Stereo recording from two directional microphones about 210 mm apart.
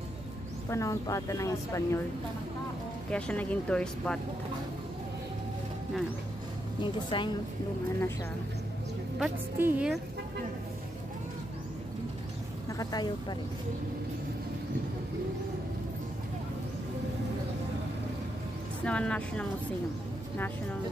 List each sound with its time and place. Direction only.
0.7 s speech: 15° left (ahead or behind)
3.1 s speech: 5° left (ahead or behind)
6.8 s speech: 20° left (ahead or behind)
9.2 s speech: 10° right (ahead or behind)
12.6 s speech: 20° left (ahead or behind)
18.9 s speech: 5° left (ahead or behind)